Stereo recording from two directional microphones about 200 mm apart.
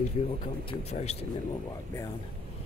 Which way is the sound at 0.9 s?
30° left (ahead or behind).